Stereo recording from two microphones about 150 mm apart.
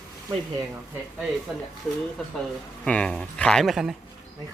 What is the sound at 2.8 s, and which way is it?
Speech, 5° left (ahead or behind).